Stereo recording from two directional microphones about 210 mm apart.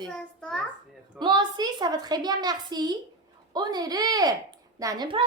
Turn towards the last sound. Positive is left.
turn(degrees=-20)  # may be behind; listen again after turning